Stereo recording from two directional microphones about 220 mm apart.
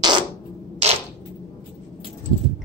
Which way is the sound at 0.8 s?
30° right (ahead or behind).